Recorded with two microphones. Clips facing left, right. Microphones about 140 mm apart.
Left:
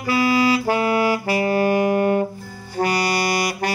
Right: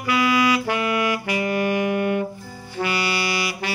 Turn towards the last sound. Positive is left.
turn(degrees=45)  # may be behind; listen again after turning